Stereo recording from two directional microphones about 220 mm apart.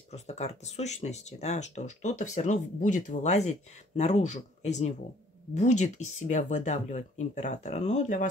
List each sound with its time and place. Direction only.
0.1 s speech: 30° left (ahead or behind)